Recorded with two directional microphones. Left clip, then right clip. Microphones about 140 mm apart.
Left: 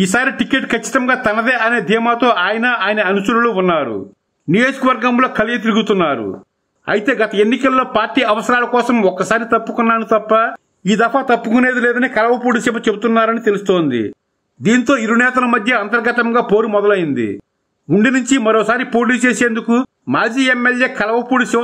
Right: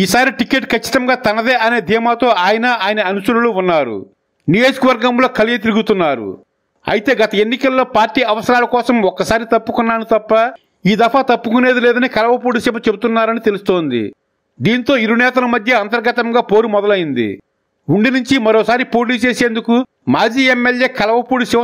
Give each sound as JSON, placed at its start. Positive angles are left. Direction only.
{"t": 0.2, "sound": "a man's voice", "side_deg": -35}
{"t": 18.3, "sound": "a man's voice", "side_deg": -30}